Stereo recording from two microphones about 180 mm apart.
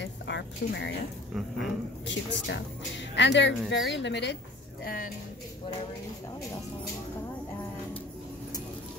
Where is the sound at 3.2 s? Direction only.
80° left.